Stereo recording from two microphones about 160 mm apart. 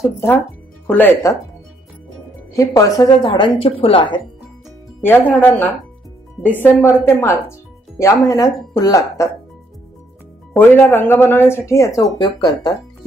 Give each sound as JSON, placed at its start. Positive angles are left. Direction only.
{"t": 0.0, "sound": "speech", "side_deg": 15}
{"t": 2.5, "sound": "a woman's voice", "side_deg": 20}
{"t": 5.0, "sound": "speech", "side_deg": 10}
{"t": 10.8, "sound": "speech", "side_deg": 15}